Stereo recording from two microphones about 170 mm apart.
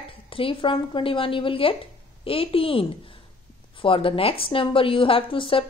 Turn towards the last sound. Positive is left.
turn(degrees=30)  # may be behind; listen again after turning